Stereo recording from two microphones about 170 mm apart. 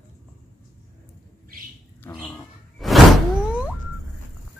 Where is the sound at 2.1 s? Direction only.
10° left (ahead or behind).